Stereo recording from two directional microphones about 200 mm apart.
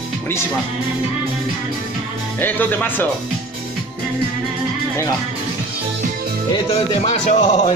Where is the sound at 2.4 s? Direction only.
10° left (ahead or behind).